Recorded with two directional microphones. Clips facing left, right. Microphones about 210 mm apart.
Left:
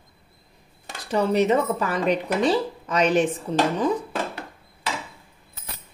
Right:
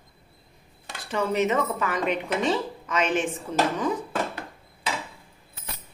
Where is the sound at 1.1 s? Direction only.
35° left (ahead or behind).